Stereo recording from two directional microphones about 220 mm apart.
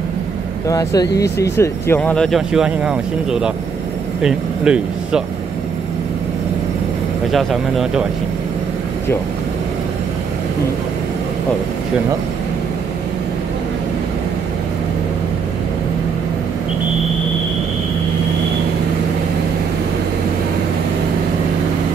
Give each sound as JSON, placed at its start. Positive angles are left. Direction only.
{"t": 0.7, "sound": "speech", "side_deg": 15}
{"t": 7.3, "sound": "speech", "side_deg": 0}